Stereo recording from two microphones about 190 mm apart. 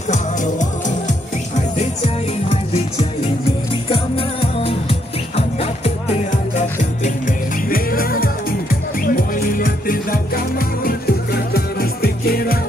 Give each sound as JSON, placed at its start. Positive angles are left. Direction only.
{"t": 0.1, "sound": "music", "side_deg": 40}
{"t": 2.5, "sound": "music", "side_deg": 35}